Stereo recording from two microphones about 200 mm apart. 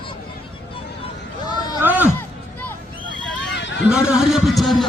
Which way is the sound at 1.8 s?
10° right (ahead or behind).